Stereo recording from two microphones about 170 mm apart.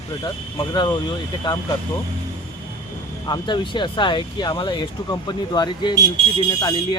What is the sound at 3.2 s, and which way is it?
Speech, 25° left (ahead or behind).